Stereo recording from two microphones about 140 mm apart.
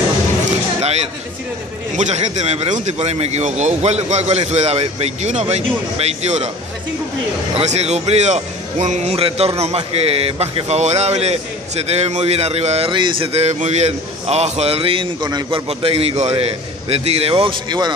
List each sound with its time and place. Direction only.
2.0 s speech: 55° right (ahead or behind)
7.5 s speech: 50° right (ahead or behind)
15.2 s a man's voice: 30° right (ahead or behind)
15.8 s speech: 45° right (ahead or behind)